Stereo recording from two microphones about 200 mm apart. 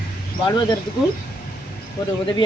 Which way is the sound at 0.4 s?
25° left (ahead or behind).